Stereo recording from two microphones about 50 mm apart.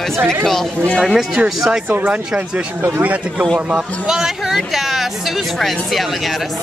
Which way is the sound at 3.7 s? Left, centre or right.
Centre.